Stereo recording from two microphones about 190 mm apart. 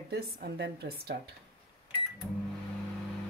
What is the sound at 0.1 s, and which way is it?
A woman's voice, 55° right (ahead or behind).